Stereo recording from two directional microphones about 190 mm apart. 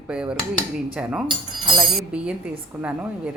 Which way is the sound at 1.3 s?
25° right (ahead or behind).